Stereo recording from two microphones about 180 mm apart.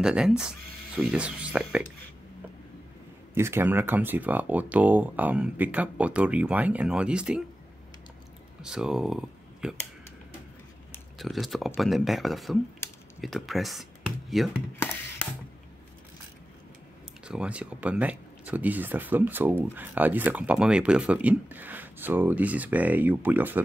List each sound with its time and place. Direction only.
0.0 s speech: 5° right (ahead or behind)
3.3 s speech: 15° right (ahead or behind)
8.6 s speech: 5° right (ahead or behind)
11.1 s speech: centre (ahead or behind)
17.3 s speech: 5° right (ahead or behind)